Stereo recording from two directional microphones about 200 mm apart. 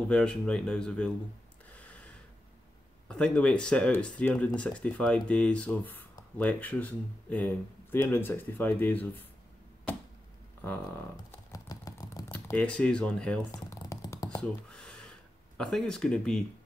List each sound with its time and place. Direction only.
0.1 s speech: 5° left (ahead or behind)
3.1 s speech: 5° left (ahead or behind)
10.6 s a sound: 10° left (ahead or behind)
13.5 s computer keyboard: 15° left (ahead or behind)
14.4 s a sound: 5° left (ahead or behind)
15.5 s speech: 5° left (ahead or behind)